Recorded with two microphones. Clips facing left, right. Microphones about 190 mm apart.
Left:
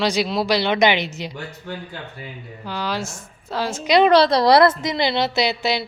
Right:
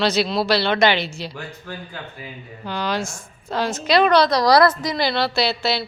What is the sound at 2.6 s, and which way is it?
A woman's voice, 5° left (ahead or behind).